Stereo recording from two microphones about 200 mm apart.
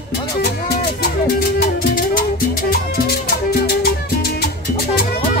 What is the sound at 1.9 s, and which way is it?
Music, 45° left (ahead or behind).